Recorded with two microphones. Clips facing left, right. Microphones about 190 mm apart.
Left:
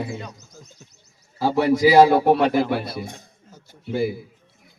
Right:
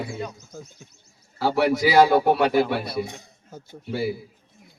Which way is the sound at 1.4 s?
15° left (ahead or behind).